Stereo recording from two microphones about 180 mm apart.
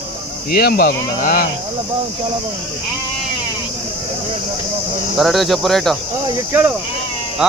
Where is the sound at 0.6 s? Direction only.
60° left (ahead or behind).